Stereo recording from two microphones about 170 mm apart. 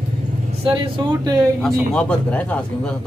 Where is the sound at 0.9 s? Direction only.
20° right (ahead or behind).